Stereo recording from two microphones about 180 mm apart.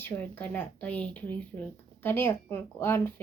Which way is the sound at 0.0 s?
10° left (ahead or behind).